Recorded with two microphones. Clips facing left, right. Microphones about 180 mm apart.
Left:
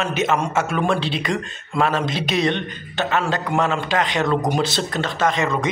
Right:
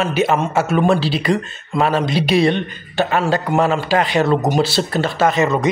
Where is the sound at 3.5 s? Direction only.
40° right (ahead or behind).